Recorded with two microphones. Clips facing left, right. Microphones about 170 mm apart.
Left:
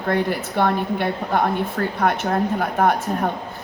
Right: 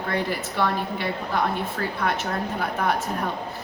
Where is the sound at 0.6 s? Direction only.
55° left (ahead or behind).